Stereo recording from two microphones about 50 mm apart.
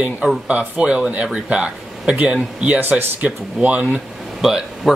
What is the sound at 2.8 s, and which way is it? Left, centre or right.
Speech, right.